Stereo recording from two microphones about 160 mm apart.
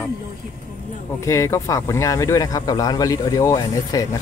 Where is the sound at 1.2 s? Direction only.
20° left (ahead or behind).